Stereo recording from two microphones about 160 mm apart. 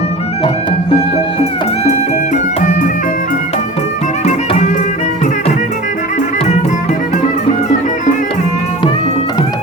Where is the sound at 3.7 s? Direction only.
45° left (ahead or behind).